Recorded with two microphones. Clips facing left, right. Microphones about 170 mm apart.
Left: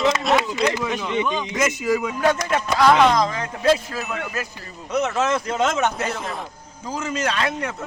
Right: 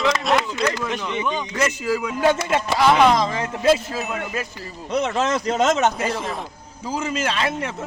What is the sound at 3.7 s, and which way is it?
Speech, 5° right (ahead or behind).